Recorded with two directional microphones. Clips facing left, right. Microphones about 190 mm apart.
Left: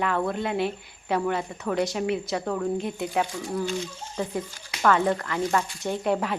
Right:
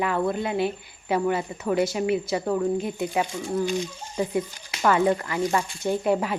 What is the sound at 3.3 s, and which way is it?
Speech, 15° right (ahead or behind).